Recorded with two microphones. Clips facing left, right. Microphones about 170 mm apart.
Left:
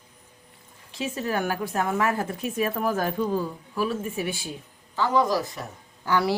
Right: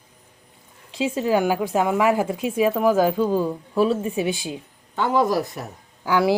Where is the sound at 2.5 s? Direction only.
90° right.